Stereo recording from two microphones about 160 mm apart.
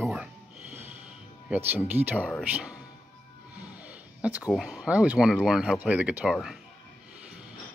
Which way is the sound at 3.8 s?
10° right (ahead or behind).